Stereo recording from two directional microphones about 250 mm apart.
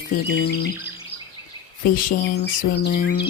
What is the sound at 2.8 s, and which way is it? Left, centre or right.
Speech, left.